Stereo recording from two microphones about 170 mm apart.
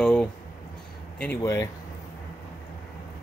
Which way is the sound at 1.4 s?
20° left (ahead or behind).